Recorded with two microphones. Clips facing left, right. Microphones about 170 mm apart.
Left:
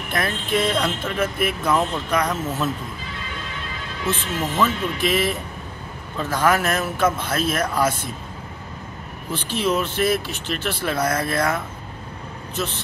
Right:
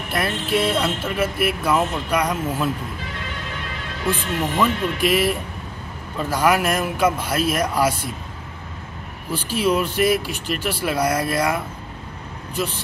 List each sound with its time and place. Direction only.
0.1 s speech: 10° right (ahead or behind)
4.0 s speech: 10° right (ahead or behind)
9.3 s speech: 10° right (ahead or behind)